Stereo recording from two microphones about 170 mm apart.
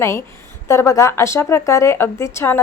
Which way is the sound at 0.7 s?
15° left (ahead or behind).